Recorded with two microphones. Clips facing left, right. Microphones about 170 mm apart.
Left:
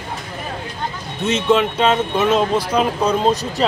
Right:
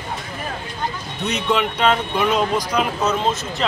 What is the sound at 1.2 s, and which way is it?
Speech, 25° left (ahead or behind).